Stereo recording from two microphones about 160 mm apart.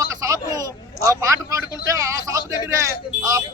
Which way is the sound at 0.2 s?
20° right (ahead or behind).